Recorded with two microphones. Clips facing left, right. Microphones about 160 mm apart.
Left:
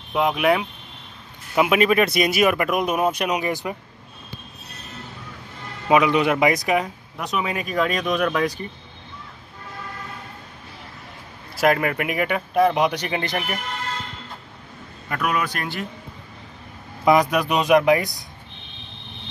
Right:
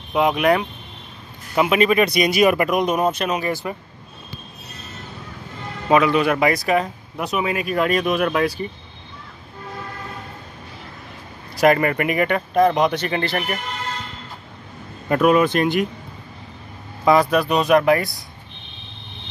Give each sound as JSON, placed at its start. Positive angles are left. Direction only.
{"t": 0.1, "sound": "speech", "side_deg": 0}
{"t": 5.9, "sound": "speech", "side_deg": 15}
{"t": 7.2, "sound": "speech", "side_deg": -5}
{"t": 11.5, "sound": "speech", "side_deg": 0}
{"t": 15.0, "sound": "speech", "side_deg": -25}
{"t": 17.0, "sound": "speech", "side_deg": 15}